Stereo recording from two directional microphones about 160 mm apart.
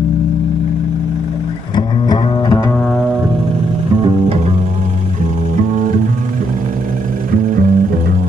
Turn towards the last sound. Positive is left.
turn(degrees=-60)  # may be behind; listen again after turning